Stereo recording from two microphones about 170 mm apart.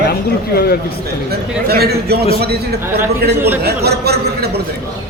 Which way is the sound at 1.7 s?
65° right (ahead or behind).